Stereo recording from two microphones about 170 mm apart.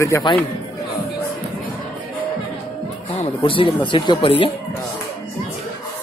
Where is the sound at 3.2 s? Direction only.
30° left (ahead or behind).